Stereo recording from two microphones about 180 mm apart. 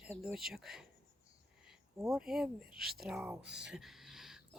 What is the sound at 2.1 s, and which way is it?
Speech, centre (ahead or behind).